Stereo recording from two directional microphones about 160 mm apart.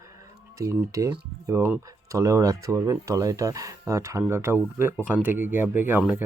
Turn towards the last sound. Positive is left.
turn(degrees=-10)  # may be behind; listen again after turning